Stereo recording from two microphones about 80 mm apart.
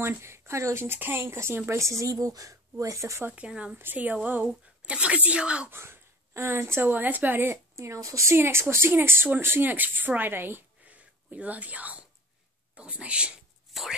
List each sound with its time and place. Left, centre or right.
0.0 s speech: right
3.3 s speech: centre
3.7 s speech: right
5.7 s speech: right
7.7 s speech: right; by 13.3 s centre